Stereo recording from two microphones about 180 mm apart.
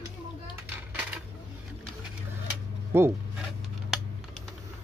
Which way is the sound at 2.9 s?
15° right (ahead or behind).